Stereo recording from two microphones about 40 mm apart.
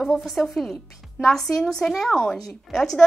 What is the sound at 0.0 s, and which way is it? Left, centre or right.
Speech, centre.